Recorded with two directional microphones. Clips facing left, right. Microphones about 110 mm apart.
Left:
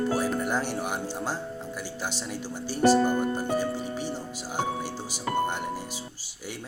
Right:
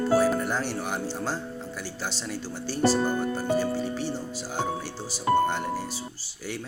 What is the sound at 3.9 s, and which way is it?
Speech, 15° left (ahead or behind).